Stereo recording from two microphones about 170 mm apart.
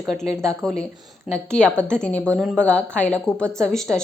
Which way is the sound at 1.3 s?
5° left (ahead or behind).